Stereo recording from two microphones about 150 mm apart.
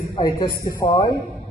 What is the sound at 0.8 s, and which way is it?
Speech, 30° left (ahead or behind).